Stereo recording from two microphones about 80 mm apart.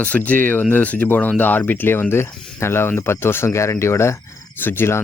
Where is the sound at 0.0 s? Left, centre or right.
Left.